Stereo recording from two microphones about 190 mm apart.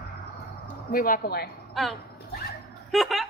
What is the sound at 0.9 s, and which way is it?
Speech, 50° left (ahead or behind).